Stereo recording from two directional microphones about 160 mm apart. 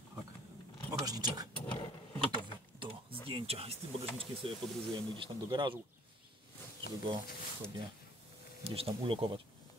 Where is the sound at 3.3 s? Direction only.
35° right (ahead or behind).